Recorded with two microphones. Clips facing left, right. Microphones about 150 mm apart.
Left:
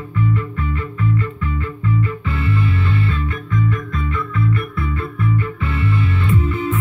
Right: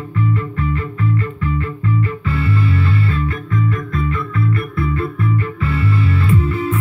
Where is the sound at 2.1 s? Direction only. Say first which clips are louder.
Right 2 dB; centre (ahead or behind).